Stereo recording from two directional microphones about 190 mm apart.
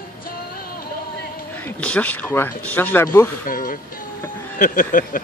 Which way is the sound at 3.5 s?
45° left (ahead or behind).